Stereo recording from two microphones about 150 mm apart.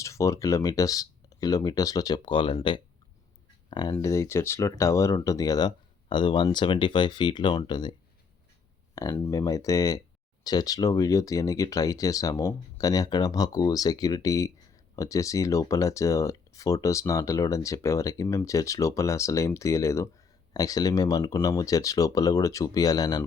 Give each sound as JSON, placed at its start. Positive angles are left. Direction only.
{"t": 0.0, "sound": "speech", "side_deg": 20}
{"t": 9.0, "sound": "speech", "side_deg": 20}